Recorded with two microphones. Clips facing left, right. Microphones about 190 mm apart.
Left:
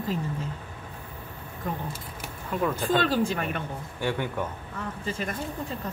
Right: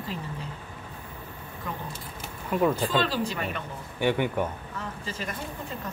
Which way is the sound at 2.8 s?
50° left (ahead or behind).